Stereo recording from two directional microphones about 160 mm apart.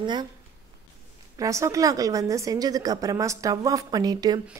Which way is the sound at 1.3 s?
20° right (ahead or behind).